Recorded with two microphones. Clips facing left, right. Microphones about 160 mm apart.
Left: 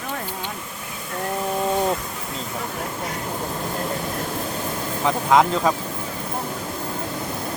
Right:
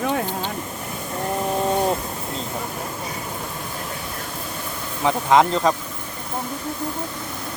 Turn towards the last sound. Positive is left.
turn(degrees=0)  # may be behind; listen again after turning